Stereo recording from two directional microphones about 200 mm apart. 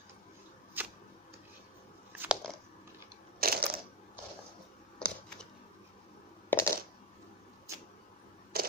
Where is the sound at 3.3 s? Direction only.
50° right (ahead or behind).